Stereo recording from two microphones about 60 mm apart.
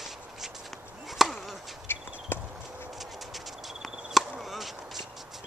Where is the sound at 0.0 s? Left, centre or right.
Centre.